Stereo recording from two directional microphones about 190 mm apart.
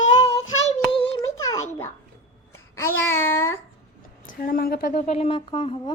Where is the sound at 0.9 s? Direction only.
30° left (ahead or behind).